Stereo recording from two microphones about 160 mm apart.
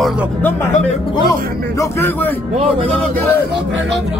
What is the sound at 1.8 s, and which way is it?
Speech, 15° left (ahead or behind).